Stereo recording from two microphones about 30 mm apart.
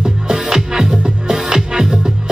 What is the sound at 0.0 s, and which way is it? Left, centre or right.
Music, right.